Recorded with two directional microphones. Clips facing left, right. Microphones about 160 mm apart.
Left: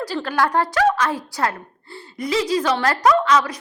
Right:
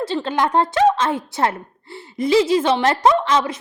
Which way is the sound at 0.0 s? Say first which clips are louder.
Right 1 dB; 25° right (ahead or behind).